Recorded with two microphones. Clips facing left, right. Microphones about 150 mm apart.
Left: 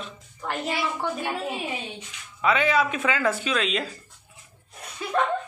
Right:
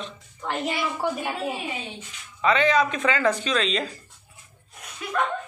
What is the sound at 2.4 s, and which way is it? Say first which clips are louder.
Speech: right 2 dB; 5° left (ahead or behind).